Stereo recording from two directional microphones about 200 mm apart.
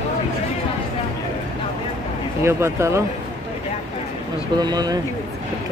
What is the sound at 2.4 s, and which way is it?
Speech, 15° right (ahead or behind).